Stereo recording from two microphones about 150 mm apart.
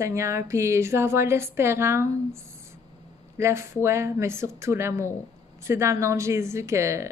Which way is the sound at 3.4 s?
15° right (ahead or behind).